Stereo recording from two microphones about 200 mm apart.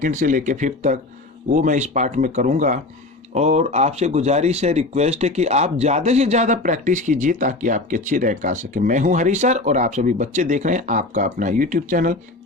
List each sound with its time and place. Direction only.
0.0 s speech: 40° right (ahead or behind)